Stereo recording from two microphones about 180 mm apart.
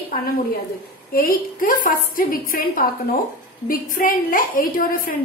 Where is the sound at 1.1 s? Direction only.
55° left (ahead or behind).